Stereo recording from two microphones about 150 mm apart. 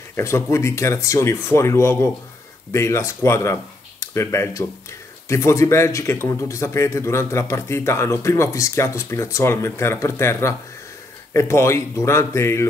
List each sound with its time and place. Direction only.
0.1 s speech: 20° left (ahead or behind)